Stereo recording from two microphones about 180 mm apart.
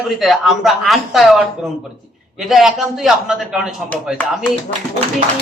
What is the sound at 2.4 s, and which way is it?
A man's voice, centre (ahead or behind).